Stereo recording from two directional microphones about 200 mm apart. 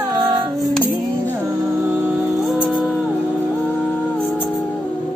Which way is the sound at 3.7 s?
10° left (ahead or behind).